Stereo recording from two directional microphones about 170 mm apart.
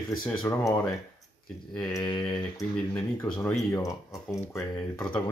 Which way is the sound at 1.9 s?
25° left (ahead or behind).